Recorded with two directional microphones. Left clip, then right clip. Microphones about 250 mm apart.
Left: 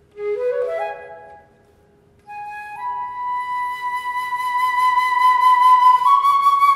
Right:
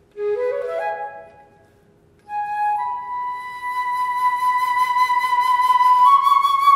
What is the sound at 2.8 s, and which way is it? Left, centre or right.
Music, right.